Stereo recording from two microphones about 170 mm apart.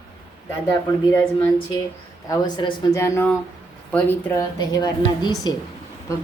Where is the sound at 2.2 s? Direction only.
25° left (ahead or behind).